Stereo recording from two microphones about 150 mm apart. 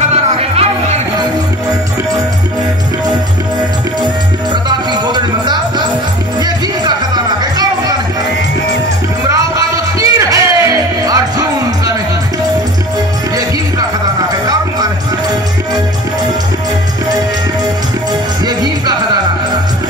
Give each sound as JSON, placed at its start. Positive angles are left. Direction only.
{"t": 0.1, "sound": "music", "side_deg": -45}
{"t": 4.6, "sound": "music", "side_deg": -30}
{"t": 9.3, "sound": "music", "side_deg": -20}
{"t": 18.4, "sound": "music", "side_deg": -25}